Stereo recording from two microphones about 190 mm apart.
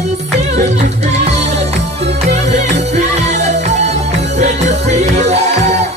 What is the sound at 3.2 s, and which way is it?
Music, 35° right (ahead or behind).